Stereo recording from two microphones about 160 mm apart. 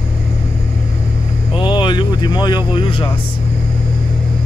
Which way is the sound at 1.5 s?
30° left (ahead or behind).